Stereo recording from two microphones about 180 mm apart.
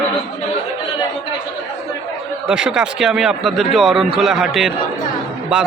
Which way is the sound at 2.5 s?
5° right (ahead or behind).